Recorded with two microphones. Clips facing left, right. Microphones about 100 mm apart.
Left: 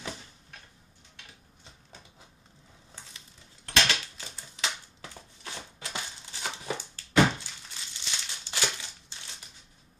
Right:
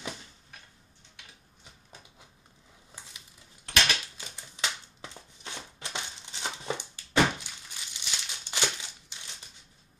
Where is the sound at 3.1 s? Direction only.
15° right (ahead or behind).